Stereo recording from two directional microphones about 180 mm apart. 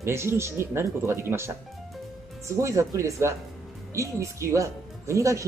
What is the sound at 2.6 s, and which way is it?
Speech, 15° right (ahead or behind).